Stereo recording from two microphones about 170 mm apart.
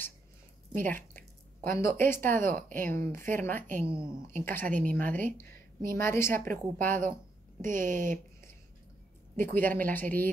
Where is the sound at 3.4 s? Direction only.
10° left (ahead or behind).